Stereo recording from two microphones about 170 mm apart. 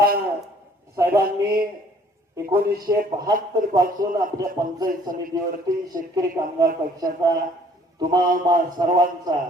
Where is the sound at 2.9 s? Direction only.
15° right (ahead or behind).